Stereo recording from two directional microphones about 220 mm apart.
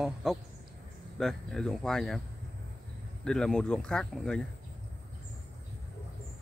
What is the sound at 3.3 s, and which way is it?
Speech, 5° left (ahead or behind).